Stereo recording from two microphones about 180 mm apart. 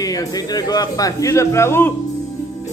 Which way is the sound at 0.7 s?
20° left (ahead or behind).